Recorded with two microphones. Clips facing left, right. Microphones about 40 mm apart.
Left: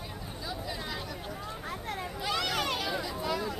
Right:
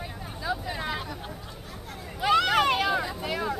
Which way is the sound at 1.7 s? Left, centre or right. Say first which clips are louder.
Left 6 dB; left.